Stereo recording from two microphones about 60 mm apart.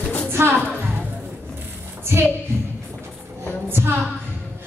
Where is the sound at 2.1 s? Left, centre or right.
Right.